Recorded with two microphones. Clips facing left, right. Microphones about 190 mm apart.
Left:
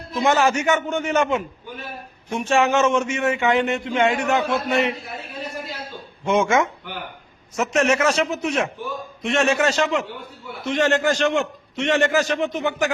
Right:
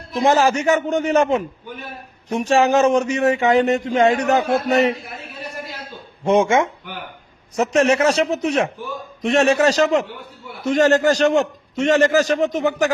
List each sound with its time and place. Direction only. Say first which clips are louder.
0.1 s speech: right 3 dB; 35° right (ahead or behind)
6.2 s speech: right 3 dB; 35° right (ahead or behind)